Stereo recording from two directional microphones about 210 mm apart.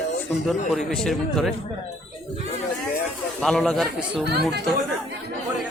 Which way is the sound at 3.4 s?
Centre (ahead or behind).